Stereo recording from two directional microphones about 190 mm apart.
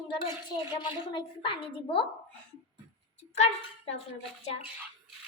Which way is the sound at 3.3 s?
35° left (ahead or behind).